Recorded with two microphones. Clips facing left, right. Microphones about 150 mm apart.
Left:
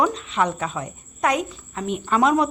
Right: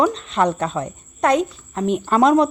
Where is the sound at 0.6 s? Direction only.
10° left (ahead or behind).